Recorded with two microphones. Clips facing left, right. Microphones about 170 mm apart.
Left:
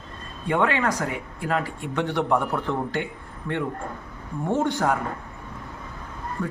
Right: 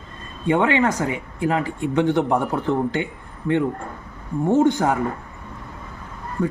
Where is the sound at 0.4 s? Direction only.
20° right (ahead or behind).